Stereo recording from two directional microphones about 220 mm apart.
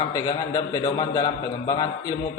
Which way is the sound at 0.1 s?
15° left (ahead or behind).